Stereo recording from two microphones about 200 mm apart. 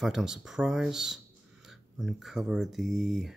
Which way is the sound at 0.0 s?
Centre (ahead or behind).